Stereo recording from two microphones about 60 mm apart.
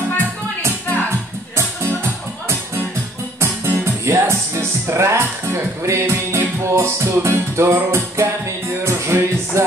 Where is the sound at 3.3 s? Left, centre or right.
Right.